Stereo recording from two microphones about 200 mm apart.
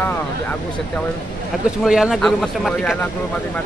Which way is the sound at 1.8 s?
5° right (ahead or behind).